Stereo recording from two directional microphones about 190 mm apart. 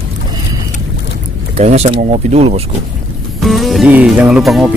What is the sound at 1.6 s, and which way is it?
Speech, 35° right (ahead or behind).